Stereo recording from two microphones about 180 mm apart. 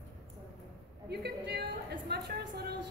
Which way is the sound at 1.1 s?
65° right (ahead or behind).